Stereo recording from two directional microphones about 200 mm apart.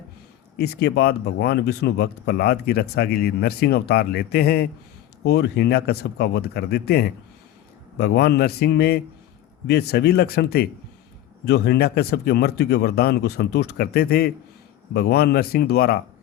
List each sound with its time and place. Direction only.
0.6 s speech: 55° left (ahead or behind)